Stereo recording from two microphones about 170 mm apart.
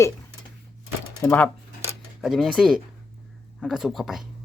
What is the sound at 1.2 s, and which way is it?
Speech, 10° left (ahead or behind).